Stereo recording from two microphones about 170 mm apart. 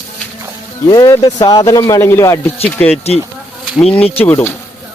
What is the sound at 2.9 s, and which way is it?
Speech, 40° left (ahead or behind).